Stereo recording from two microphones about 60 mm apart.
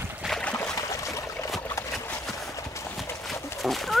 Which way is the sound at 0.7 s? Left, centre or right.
Left.